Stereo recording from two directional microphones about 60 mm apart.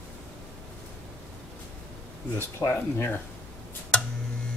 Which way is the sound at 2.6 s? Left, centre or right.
Left.